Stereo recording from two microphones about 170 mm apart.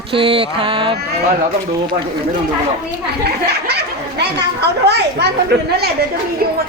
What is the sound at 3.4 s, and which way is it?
Speech, 75° right (ahead or behind).